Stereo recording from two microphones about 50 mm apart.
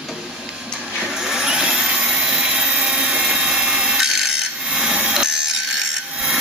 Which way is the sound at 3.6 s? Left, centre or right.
Right.